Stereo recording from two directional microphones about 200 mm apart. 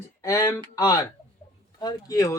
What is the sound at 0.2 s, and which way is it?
Speech, 15° left (ahead or behind).